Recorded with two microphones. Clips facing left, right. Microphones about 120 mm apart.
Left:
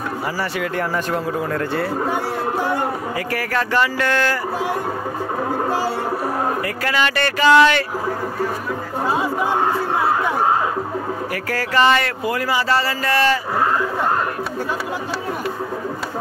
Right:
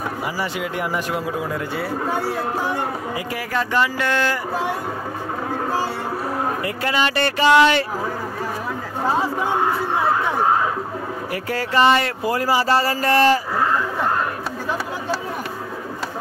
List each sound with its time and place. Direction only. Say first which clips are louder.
0.6 s speech: left 2 dB; 10° right (ahead or behind)
3.3 s speech: left 1 dB; 15° right (ahead or behind)
6.8 s speech: right 1 dB; 25° right (ahead or behind)
11.5 s speech: even; 25° right (ahead or behind)